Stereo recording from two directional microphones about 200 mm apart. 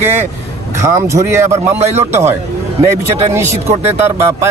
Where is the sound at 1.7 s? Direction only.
35° right (ahead or behind).